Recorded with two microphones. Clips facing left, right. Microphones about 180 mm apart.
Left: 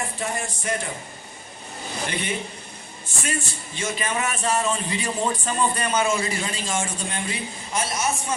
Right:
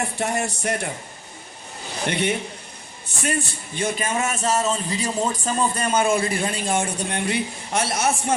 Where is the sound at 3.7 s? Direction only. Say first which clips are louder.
Right 3 dB; 50° right (ahead or behind).